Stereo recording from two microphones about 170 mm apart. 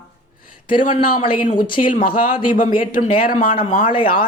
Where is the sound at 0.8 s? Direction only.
50° left (ahead or behind).